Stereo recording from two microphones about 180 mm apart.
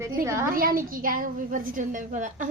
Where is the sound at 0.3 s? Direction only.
15° right (ahead or behind).